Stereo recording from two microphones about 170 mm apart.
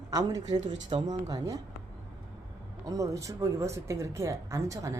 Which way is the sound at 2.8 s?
20° right (ahead or behind).